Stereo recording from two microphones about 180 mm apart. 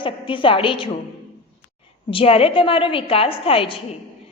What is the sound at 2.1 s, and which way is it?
A woman's voice, 30° left (ahead or behind).